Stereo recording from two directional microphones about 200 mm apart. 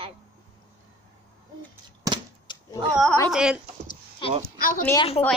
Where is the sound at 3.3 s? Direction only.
5° right (ahead or behind).